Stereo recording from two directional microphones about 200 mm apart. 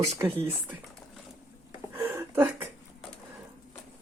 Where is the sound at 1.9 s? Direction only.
10° right (ahead or behind).